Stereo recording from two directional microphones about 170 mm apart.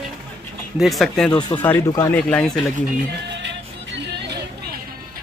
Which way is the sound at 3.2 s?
90° right.